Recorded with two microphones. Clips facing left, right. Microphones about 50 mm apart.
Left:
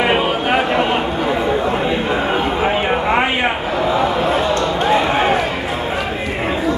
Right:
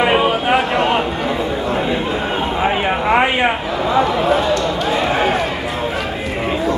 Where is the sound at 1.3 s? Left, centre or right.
Centre.